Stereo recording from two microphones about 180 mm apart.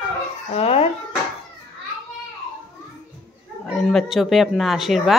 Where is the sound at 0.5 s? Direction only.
35° left (ahead or behind).